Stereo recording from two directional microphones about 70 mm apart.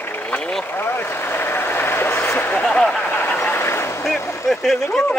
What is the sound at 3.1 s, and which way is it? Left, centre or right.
Vehicle, left.